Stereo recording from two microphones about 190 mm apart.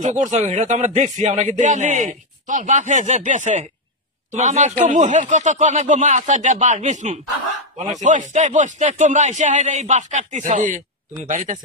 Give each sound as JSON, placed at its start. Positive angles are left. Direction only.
{"t": 0.0, "sound": "a man's voice", "side_deg": -40}